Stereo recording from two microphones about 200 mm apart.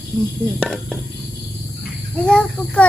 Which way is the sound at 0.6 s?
Centre (ahead or behind).